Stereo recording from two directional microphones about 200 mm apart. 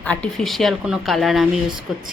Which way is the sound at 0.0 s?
5° left (ahead or behind).